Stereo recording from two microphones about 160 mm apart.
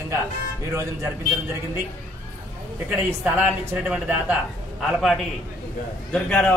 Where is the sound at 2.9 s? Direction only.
10° right (ahead or behind).